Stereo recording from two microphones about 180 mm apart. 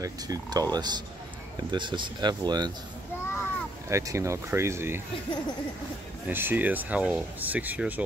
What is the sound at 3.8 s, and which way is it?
Speech, 15° right (ahead or behind).